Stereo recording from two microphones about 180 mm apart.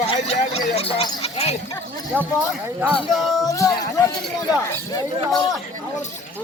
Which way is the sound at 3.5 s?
15° left (ahead or behind).